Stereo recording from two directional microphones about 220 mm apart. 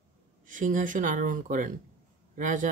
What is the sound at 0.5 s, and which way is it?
Speech, 35° right (ahead or behind).